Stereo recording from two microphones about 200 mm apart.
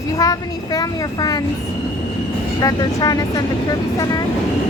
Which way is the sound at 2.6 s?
15° left (ahead or behind).